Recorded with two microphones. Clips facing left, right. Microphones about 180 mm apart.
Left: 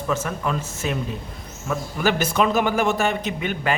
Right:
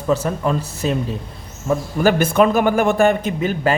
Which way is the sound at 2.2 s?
55° right (ahead or behind).